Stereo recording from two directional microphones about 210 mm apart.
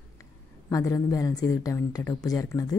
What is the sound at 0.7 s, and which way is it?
Speech, 15° left (ahead or behind).